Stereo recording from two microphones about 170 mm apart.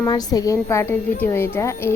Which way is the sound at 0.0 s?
20° left (ahead or behind).